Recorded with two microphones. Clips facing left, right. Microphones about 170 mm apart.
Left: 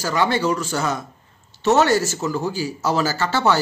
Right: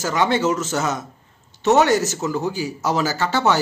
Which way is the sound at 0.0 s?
20° right (ahead or behind).